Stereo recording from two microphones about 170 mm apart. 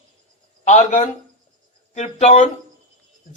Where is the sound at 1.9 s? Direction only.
40° left (ahead or behind).